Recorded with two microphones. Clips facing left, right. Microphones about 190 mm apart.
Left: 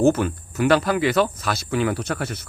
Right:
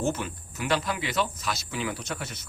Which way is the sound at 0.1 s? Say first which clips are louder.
Left 10 dB; 60° left (ahead or behind).